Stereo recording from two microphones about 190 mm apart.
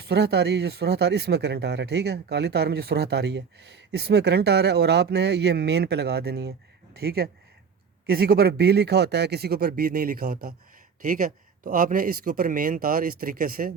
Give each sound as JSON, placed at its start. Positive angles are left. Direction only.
{"t": 0.1, "sound": "a man's voice", "side_deg": -60}